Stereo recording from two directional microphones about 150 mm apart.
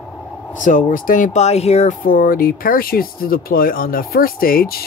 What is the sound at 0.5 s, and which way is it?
Speech, 60° left (ahead or behind).